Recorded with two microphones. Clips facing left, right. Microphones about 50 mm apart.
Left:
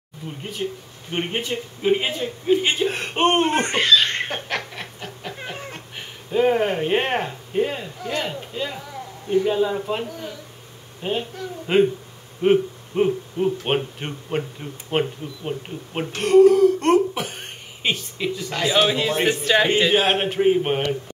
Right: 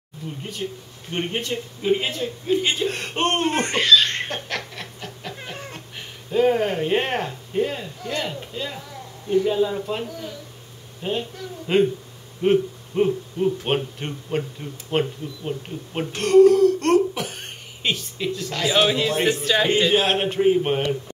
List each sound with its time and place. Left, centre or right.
0.4 s a man's voice: centre
19.1 s speech: left